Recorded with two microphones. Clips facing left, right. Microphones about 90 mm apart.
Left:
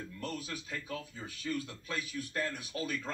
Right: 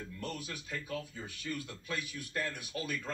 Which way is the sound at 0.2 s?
30° left (ahead or behind).